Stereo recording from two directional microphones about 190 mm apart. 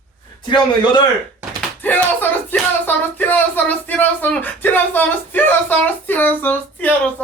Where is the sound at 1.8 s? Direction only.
10° left (ahead or behind).